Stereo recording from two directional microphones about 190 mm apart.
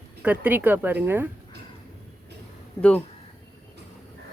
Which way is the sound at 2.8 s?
5° left (ahead or behind).